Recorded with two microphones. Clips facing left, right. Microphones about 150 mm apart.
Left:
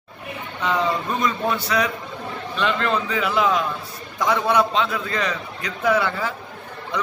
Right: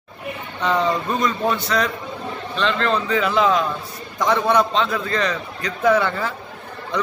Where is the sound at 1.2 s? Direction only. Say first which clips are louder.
Right 1 dB; 10° left (ahead or behind).